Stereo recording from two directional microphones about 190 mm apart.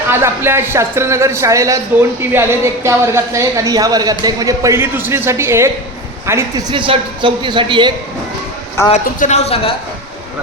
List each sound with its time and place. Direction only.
0.1 s a man's voice: 10° right (ahead or behind)
6.7 s a man's voice: 25° right (ahead or behind)
8.9 s speech: 35° left (ahead or behind)